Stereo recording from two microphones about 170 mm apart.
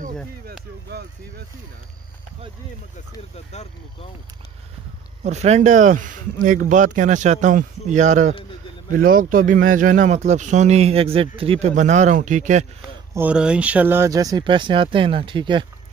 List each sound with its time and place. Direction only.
0.5 s a sound: 70° right (ahead or behind)
3.3 s speech: 40° left (ahead or behind)
5.2 s speech: 40° right (ahead or behind)
11.7 s speech: 45° right (ahead or behind)
13.1 s speech: 10° right (ahead or behind); by 15.6 s 30° right (ahead or behind)